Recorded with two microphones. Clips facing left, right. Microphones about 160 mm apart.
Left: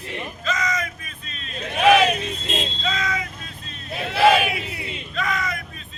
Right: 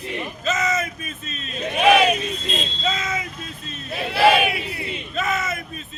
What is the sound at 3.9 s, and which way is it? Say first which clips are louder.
Crowd: even; 5° right (ahead or behind).